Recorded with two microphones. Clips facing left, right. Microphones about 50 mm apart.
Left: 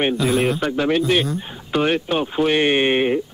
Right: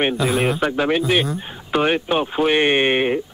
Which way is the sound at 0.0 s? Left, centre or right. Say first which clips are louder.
Even; centre.